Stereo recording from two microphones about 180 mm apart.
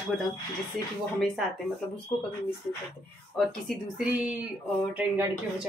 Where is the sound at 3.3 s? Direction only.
Centre (ahead or behind).